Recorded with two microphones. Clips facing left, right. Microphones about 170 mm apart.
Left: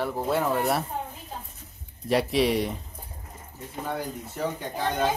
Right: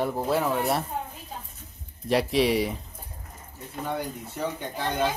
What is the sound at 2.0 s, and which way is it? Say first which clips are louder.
Speech: even; centre (ahead or behind).